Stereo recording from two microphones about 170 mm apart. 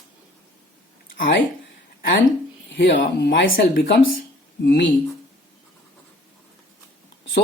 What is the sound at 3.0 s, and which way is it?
Speech, 55° left (ahead or behind).